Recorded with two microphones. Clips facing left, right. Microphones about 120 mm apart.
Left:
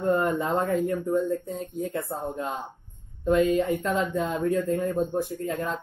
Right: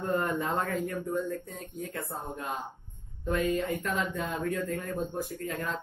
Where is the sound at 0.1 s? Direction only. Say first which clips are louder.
Left 5 dB; 20° left (ahead or behind).